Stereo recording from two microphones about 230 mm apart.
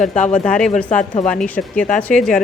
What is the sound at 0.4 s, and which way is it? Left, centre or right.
Speech, centre.